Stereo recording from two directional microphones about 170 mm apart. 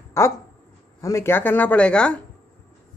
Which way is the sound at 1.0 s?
15° left (ahead or behind).